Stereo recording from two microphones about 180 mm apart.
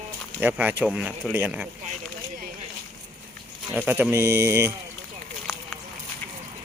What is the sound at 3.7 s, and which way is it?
Speech, 10° right (ahead or behind).